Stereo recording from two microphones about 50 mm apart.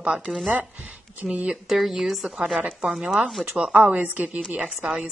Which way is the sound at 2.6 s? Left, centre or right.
Centre.